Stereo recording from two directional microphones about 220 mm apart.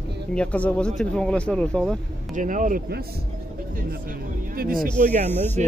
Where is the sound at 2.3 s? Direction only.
35° right (ahead or behind).